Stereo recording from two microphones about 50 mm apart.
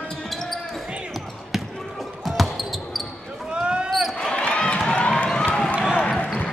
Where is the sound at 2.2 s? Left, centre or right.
Centre.